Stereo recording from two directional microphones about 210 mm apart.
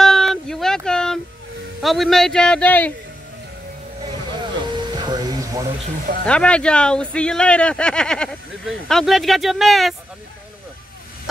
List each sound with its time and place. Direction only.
0.0 s a sound: centre (ahead or behind)
1.8 s speech: centre (ahead or behind)
4.7 s music: 20° right (ahead or behind)
5.9 s speech: 45° right (ahead or behind)
6.2 s speech: 5° left (ahead or behind)